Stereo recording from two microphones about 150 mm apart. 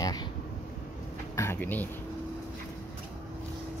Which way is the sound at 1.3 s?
20° left (ahead or behind).